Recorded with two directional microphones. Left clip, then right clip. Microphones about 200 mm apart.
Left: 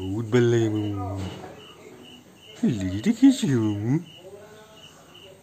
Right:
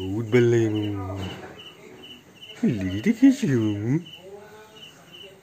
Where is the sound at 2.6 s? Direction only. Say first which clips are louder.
Right 1 dB; 5° right (ahead or behind).